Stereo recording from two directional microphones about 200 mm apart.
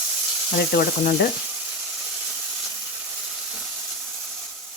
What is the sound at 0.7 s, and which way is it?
Speech, 50° left (ahead or behind).